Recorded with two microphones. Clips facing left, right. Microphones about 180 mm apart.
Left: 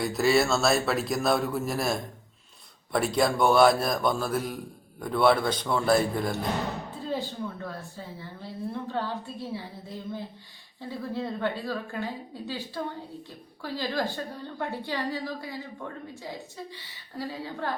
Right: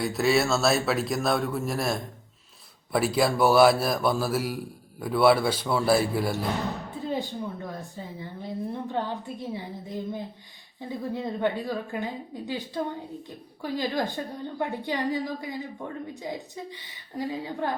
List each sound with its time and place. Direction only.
0.0 s a man's voice: centre (ahead or behind)
7.1 s a woman's voice: 15° right (ahead or behind)